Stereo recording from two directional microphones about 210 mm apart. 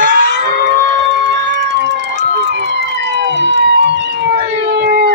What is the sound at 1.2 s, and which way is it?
Emergency vehicle, 55° right (ahead or behind).